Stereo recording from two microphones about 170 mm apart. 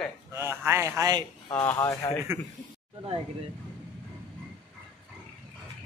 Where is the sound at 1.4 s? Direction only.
15° left (ahead or behind).